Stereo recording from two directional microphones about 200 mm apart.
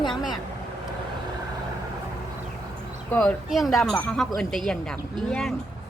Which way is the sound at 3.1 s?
5° left (ahead or behind).